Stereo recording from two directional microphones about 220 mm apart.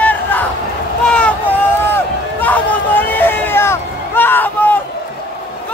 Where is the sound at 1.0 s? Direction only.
5° left (ahead or behind).